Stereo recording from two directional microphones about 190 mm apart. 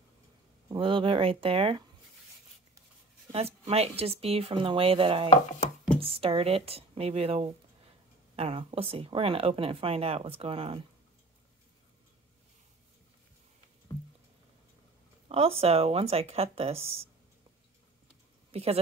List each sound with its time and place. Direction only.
0.7 s speech: 25° right (ahead or behind)
3.3 s speech: 30° right (ahead or behind)
15.2 s speech: 30° right (ahead or behind)
18.5 s speech: 30° right (ahead or behind)